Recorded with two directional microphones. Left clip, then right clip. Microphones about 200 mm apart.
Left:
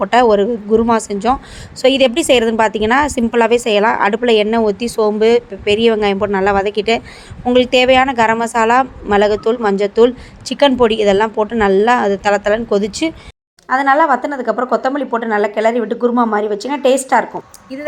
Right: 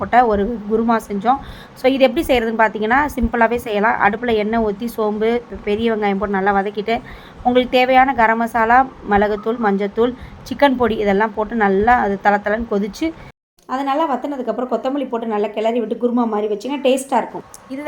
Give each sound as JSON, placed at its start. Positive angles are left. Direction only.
{"t": 0.0, "sound": "a woman's voice", "side_deg": 40}
{"t": 13.7, "sound": "speech", "side_deg": 20}